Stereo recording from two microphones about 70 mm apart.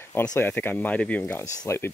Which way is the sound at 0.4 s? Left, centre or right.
Left.